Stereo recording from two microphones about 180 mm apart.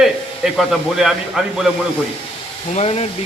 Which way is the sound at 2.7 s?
35° left (ahead or behind).